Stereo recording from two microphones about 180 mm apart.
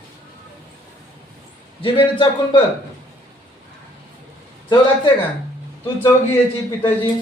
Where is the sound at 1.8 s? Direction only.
30° left (ahead or behind).